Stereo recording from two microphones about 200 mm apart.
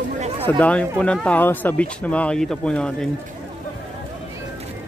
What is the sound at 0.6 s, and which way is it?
Speech, 5° left (ahead or behind).